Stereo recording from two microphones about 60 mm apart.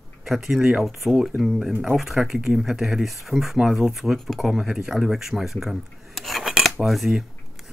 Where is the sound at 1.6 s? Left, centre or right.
Centre.